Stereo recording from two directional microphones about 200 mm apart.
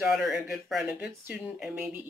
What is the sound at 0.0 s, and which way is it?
Speech, centre (ahead or behind).